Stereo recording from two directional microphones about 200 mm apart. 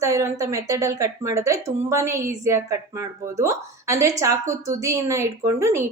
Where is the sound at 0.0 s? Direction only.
15° right (ahead or behind).